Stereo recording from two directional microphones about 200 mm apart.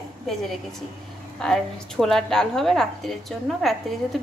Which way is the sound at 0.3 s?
Centre (ahead or behind).